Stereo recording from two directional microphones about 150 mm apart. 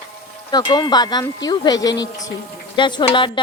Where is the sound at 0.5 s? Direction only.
30° left (ahead or behind).